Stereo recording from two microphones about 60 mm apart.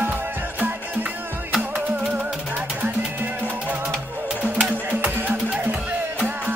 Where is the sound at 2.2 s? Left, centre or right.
Right.